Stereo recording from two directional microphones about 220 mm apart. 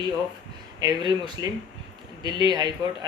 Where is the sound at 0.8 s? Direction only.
20° right (ahead or behind).